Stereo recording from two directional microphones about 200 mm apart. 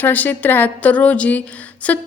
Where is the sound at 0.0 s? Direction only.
10° left (ahead or behind).